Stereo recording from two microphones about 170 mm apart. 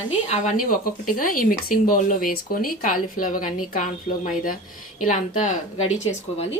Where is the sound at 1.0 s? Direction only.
55° left (ahead or behind).